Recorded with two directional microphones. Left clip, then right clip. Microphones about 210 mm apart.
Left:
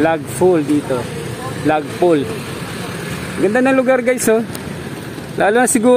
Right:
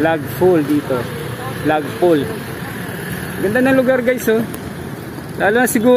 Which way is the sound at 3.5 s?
20° left (ahead or behind).